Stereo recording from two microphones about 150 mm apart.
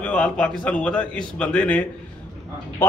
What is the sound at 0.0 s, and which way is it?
A man's voice, 10° left (ahead or behind).